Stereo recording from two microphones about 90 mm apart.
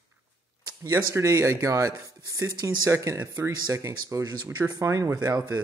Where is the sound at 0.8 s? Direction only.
35° right (ahead or behind).